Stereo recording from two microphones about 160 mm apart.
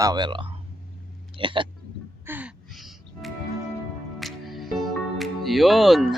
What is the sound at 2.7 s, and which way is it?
Music, centre (ahead or behind).